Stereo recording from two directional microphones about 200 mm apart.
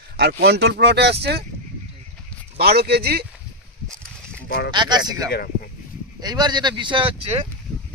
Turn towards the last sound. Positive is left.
turn(degrees=-25)  # may be behind; listen again after turning